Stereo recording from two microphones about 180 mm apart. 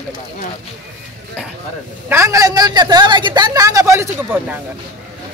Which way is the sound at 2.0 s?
15° right (ahead or behind).